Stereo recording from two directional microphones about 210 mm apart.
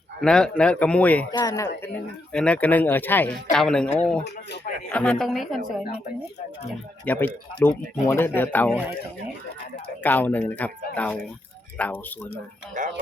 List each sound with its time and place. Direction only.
0.2 s a man's voice: 5° left (ahead or behind)
1.3 s speech: 15° left (ahead or behind)
2.3 s a man's voice: 5° left (ahead or behind)
4.9 s a man's voice: 5° left (ahead or behind)
7.0 s speech: 10° left (ahead or behind)
10.0 s speech: 10° left (ahead or behind)
12.3 s speech: 40° right (ahead or behind)